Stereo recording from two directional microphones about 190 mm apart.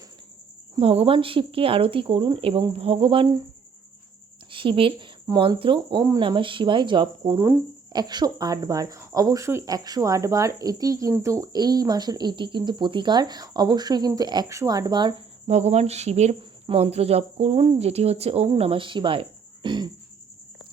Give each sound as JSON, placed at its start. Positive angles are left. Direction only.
{"t": 0.8, "sound": "speech", "side_deg": -30}
{"t": 4.5, "sound": "speech", "side_deg": -30}
{"t": 15.4, "sound": "speech", "side_deg": -35}